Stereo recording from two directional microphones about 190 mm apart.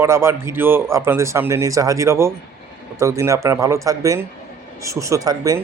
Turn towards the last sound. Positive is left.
turn(degrees=-20)  # may be behind; listen again after turning